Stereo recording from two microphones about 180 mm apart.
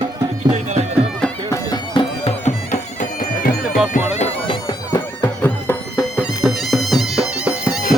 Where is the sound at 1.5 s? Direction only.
20° left (ahead or behind).